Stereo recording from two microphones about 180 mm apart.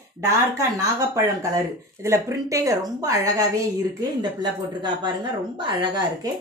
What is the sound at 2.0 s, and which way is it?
A woman's voice, 15° right (ahead or behind).